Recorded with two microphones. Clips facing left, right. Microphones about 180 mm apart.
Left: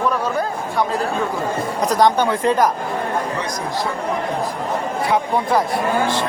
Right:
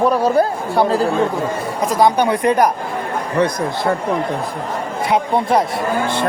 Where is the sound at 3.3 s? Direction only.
60° right (ahead or behind).